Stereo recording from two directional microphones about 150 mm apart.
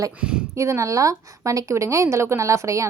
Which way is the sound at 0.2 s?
5° right (ahead or behind).